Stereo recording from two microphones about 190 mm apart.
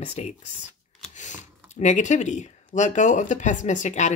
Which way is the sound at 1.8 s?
40° left (ahead or behind).